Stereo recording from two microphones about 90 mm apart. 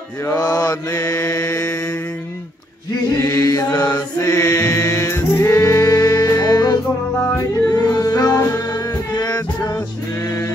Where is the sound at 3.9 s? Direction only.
40° left (ahead or behind).